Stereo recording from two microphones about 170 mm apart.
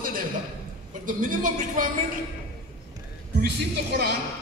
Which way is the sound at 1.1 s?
50° right (ahead or behind).